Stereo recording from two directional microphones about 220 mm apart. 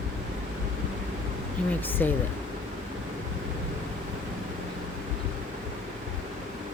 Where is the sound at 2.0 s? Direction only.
5° left (ahead or behind).